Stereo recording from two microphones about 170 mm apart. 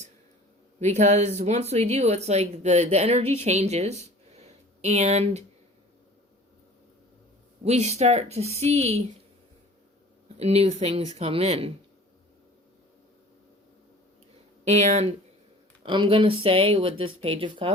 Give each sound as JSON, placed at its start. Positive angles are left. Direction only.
{"t": 0.8, "sound": "a man's voice", "side_deg": -40}
{"t": 4.0, "sound": "a sound", "side_deg": -40}
{"t": 7.6, "sound": "speech", "side_deg": -40}
{"t": 10.3, "sound": "speech", "side_deg": -40}
{"t": 14.6, "sound": "speech", "side_deg": -40}
{"t": 15.8, "sound": "speech", "side_deg": -30}